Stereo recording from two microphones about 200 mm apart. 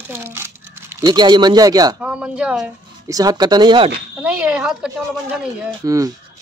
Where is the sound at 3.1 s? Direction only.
20° right (ahead or behind).